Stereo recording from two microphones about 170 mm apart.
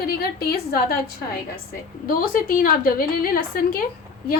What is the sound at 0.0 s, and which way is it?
Speech, 65° left (ahead or behind).